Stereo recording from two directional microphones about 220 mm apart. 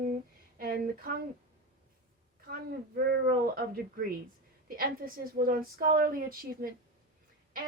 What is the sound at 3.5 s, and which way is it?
Speech, 40° right (ahead or behind).